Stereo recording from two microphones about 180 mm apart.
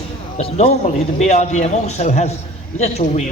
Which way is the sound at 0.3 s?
35° left (ahead or behind).